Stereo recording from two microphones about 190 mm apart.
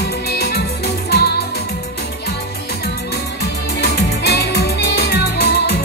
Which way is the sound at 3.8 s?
60° left (ahead or behind).